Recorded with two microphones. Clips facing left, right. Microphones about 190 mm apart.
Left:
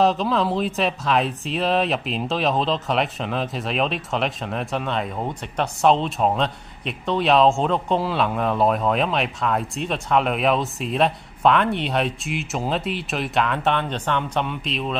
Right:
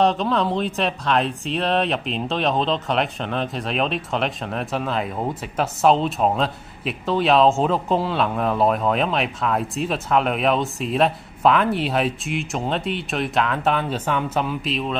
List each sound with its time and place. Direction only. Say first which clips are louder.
0.0 s speech: even; centre (ahead or behind)